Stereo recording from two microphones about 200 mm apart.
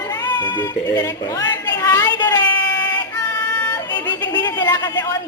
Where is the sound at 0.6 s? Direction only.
10° left (ahead or behind).